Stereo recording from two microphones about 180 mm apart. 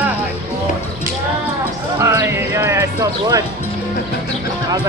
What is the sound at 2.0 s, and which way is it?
Clip-clop, 15° right (ahead or behind).